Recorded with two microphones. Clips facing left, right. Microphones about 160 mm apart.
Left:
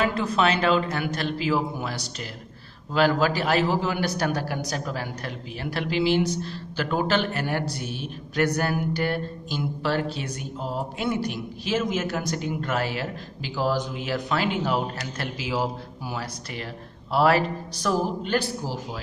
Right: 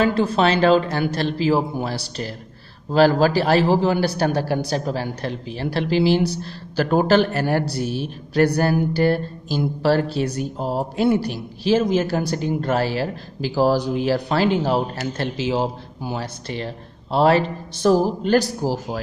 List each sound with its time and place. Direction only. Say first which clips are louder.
0.0 s a man's voice: right 5 dB; 30° right (ahead or behind)